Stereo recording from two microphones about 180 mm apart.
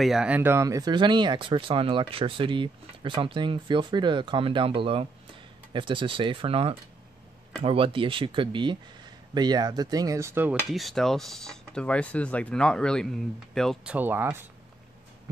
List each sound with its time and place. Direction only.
0.0 s speech: 5° right (ahead or behind)
10.7 s speech: centre (ahead or behind)
13.9 s speech: 10° right (ahead or behind)